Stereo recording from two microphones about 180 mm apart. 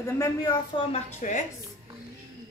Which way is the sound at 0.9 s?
40° left (ahead or behind).